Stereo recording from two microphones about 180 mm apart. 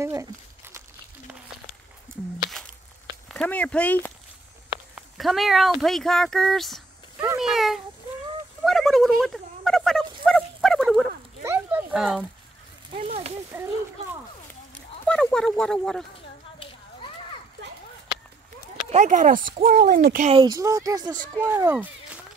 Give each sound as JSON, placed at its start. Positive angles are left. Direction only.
{"t": 0.0, "sound": "crumpling", "side_deg": -15}
{"t": 3.3, "sound": "speech", "side_deg": 5}
{"t": 8.6, "sound": "a sound", "side_deg": 0}
{"t": 11.4, "sound": "a sound", "side_deg": -10}
{"t": 12.9, "sound": "speech", "side_deg": -35}
{"t": 13.5, "sound": "speech", "side_deg": -10}
{"t": 15.0, "sound": "speech", "side_deg": 5}
{"t": 18.9, "sound": "speech", "side_deg": -45}
{"t": 20.2, "sound": "speech", "side_deg": -25}
{"t": 21.4, "sound": "speech", "side_deg": -10}